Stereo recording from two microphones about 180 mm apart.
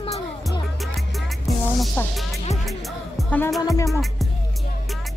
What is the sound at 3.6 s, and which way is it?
Music, 20° left (ahead or behind).